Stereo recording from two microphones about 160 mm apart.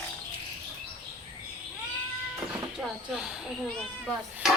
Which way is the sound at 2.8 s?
5° right (ahead or behind).